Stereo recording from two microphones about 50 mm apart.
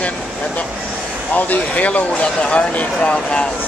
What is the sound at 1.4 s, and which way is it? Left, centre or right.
Speech, left.